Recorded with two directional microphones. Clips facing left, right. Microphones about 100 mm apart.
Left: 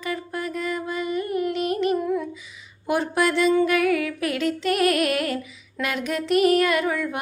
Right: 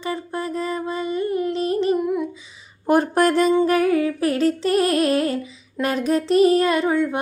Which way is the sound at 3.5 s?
30° right (ahead or behind).